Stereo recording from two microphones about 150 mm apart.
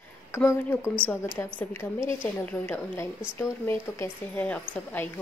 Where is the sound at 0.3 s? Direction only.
15° left (ahead or behind).